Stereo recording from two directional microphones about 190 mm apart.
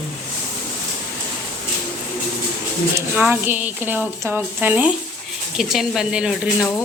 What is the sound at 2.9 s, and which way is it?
Speech, 10° right (ahead or behind).